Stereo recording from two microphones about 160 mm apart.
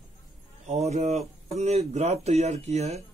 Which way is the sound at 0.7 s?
45° right (ahead or behind).